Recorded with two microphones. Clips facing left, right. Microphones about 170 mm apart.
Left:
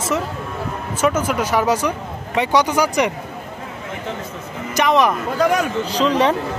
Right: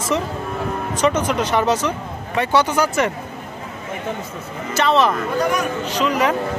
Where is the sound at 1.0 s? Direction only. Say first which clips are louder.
Even; 5° left (ahead or behind).